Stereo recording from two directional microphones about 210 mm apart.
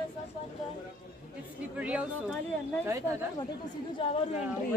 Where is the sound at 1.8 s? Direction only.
5° right (ahead or behind).